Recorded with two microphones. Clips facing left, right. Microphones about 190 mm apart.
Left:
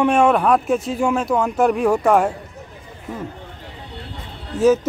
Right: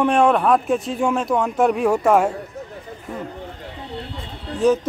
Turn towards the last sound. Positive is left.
turn(degrees=5)  # may be behind; listen again after turning